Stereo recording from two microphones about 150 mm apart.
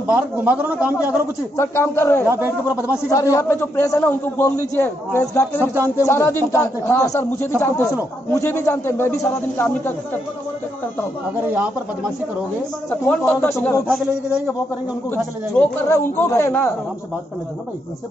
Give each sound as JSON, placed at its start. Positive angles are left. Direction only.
{"t": 0.0, "sound": "a man's voice", "side_deg": -10}
{"t": 1.6, "sound": "a man's voice", "side_deg": 15}
{"t": 2.2, "sound": "a man's voice", "side_deg": -15}
{"t": 2.9, "sound": "a man's voice", "side_deg": 20}
{"t": 13.0, "sound": "a man's voice", "side_deg": 10}
{"t": 13.8, "sound": "a man's voice", "side_deg": -5}
{"t": 15.0, "sound": "a man's voice", "side_deg": 15}